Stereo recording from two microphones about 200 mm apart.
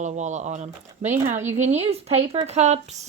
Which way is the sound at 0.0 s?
35° right (ahead or behind).